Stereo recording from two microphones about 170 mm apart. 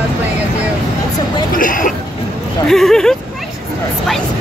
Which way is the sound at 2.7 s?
Centre (ahead or behind).